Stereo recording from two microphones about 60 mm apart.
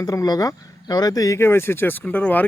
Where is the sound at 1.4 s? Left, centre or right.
Left.